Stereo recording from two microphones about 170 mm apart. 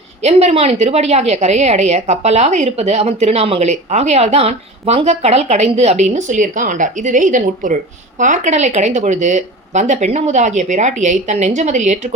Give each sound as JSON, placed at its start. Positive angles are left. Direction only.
{"t": 0.2, "sound": "a woman's voice", "side_deg": -40}